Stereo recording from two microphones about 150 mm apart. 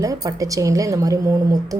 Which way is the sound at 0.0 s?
25° right (ahead or behind).